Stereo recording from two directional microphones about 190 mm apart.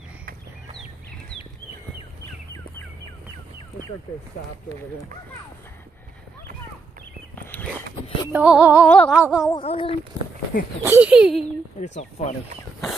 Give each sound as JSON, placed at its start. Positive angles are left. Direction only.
{"t": 8.3, "sound": "music", "side_deg": -5}
{"t": 8.8, "sound": "a sound", "side_deg": 5}
{"t": 9.1, "sound": "speech", "side_deg": -5}
{"t": 9.5, "sound": "speech", "side_deg": 30}
{"t": 10.8, "sound": "speech", "side_deg": -10}
{"t": 12.0, "sound": "speech", "side_deg": 35}